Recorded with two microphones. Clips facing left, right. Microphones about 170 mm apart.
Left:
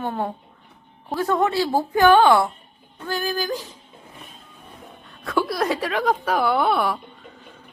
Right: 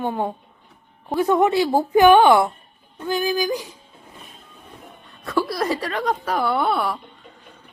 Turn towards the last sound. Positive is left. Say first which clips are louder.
# left 1 dB
turn(degrees=0)  # may be behind; listen again after turning